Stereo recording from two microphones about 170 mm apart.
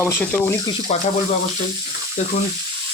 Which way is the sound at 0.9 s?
40° left (ahead or behind).